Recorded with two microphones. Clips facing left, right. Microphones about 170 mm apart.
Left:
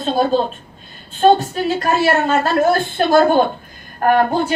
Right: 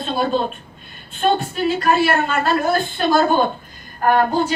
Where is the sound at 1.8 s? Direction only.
45° left (ahead or behind).